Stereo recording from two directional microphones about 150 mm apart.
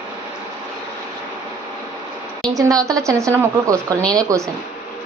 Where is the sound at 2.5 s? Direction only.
25° right (ahead or behind).